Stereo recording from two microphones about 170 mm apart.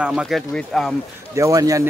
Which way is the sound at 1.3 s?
20° right (ahead or behind).